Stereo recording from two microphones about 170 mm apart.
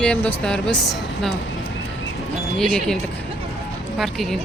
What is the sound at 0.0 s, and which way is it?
Speech, 10° left (ahead or behind).